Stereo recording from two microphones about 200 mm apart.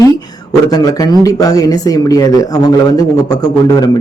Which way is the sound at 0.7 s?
20° left (ahead or behind).